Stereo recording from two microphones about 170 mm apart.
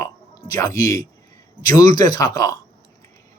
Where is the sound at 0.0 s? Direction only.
20° left (ahead or behind).